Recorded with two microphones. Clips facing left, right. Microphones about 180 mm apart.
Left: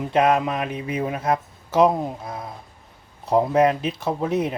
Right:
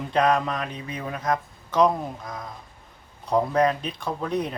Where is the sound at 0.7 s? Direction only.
10° left (ahead or behind).